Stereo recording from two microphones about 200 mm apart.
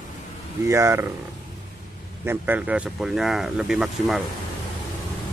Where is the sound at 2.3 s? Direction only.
10° right (ahead or behind).